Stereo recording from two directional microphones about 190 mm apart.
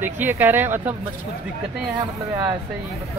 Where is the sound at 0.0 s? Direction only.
10° right (ahead or behind).